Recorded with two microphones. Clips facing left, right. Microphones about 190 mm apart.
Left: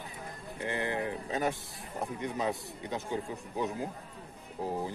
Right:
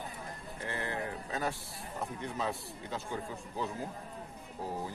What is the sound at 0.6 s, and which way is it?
Speech, 15° left (ahead or behind).